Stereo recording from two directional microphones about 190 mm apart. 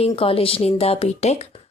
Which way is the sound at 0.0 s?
30° left (ahead or behind).